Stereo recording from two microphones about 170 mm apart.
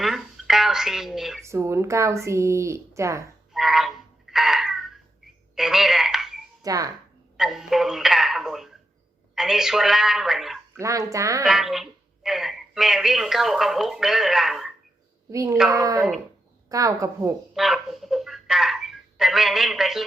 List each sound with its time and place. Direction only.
0.0 s a sound: centre (ahead or behind)
1.5 s speech: 15° right (ahead or behind)
3.5 s music: centre (ahead or behind)
5.5 s telephone: centre (ahead or behind)
6.6 s speech: 20° right (ahead or behind)
7.3 s a woman's voice: centre (ahead or behind)
10.8 s speech: 20° right (ahead or behind)
11.4 s speech: centre (ahead or behind)
15.3 s speech: 20° right (ahead or behind)
17.5 s telephone: centre (ahead or behind)